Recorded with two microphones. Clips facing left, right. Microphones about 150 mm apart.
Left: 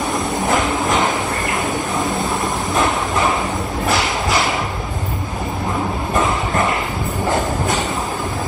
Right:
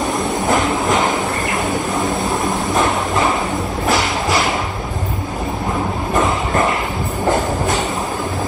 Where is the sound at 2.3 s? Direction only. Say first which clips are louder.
Right 2 dB; centre (ahead or behind).